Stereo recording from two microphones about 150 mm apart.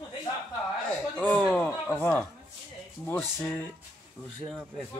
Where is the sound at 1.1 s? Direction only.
10° left (ahead or behind).